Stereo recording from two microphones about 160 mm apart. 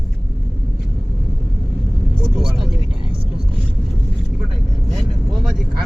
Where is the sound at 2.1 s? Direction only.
30° right (ahead or behind).